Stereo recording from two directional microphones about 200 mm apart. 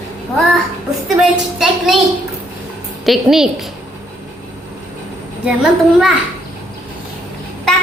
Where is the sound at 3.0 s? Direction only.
Centre (ahead or behind).